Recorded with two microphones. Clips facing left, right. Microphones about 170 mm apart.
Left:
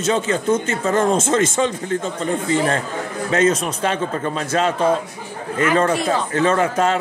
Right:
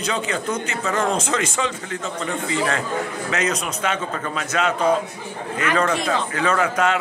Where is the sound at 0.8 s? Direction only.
30° left (ahead or behind).